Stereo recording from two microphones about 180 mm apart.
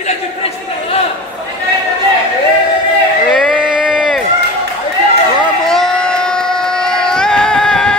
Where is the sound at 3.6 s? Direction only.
5° right (ahead or behind).